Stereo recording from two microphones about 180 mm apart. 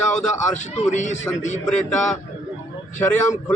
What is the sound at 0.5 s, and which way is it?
Speech, 40° left (ahead or behind).